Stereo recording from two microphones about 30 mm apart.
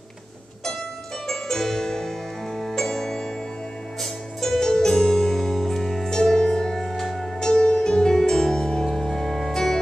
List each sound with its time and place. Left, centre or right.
1.2 s music: centre
6.3 s music: left
6.9 s music: centre
7.2 s music: centre